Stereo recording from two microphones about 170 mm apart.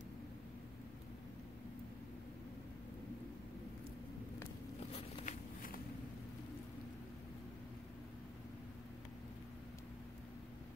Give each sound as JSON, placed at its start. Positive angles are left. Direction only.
{"t": 5.2, "sound": "walk", "side_deg": 55}